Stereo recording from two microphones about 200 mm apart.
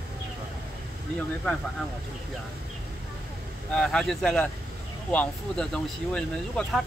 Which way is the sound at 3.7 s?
5° left (ahead or behind).